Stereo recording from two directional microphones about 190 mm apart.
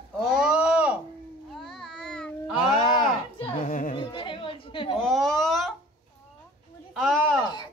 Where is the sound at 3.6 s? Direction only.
40° left (ahead or behind).